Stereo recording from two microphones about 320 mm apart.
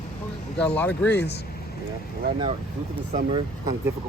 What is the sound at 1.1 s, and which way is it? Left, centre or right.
Speech, left.